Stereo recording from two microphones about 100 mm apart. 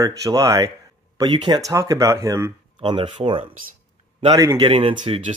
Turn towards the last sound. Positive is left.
turn(degrees=-50)  # may be behind; listen again after turning